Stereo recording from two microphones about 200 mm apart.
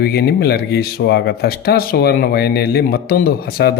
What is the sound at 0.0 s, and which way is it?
Speech, 50° left (ahead or behind).